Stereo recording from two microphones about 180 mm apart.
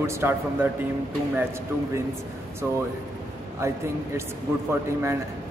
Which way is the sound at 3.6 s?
15° right (ahead or behind).